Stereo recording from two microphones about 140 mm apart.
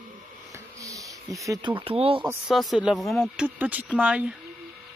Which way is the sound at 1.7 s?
40° right (ahead or behind).